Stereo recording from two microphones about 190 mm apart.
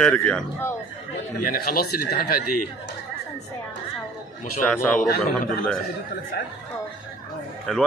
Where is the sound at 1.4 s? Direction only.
50° left (ahead or behind).